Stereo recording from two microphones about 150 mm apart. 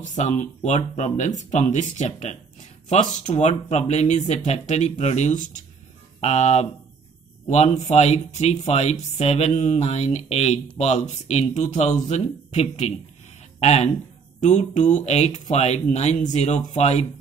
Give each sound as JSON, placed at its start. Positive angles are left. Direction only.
{"t": 0.0, "sound": "a man's voice", "side_deg": 55}